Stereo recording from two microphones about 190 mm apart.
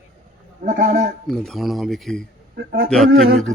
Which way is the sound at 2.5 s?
55° right (ahead or behind).